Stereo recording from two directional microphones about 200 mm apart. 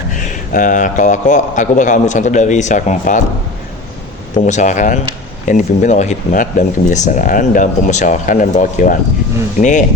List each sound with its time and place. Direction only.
0.1 s speech: 40° left (ahead or behind)
4.4 s speech: 35° left (ahead or behind)